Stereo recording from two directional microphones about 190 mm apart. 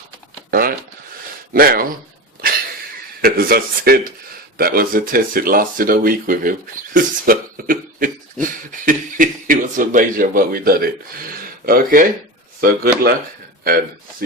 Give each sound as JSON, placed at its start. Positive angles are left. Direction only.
{"t": 0.5, "sound": "a sound", "side_deg": -50}
{"t": 1.5, "sound": "speech", "side_deg": -50}
{"t": 3.2, "sound": "speech", "side_deg": -50}